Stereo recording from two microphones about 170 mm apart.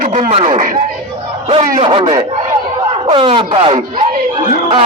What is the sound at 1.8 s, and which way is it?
Speech, 35° right (ahead or behind).